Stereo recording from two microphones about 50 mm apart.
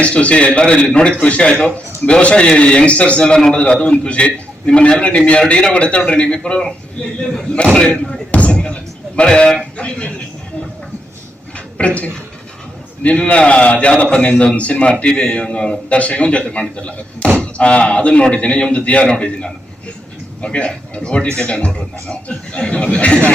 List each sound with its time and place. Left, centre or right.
0.0 s a man's voice: left
8.3 s slam: left
9.7 s a man's voice: left
11.5 s a sound: left
13.0 s a man's voice: left